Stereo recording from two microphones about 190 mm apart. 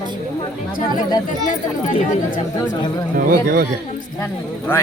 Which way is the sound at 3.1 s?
50° right (ahead or behind).